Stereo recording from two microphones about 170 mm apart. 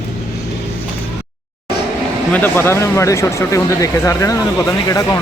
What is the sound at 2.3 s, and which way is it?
Speech, 10° left (ahead or behind).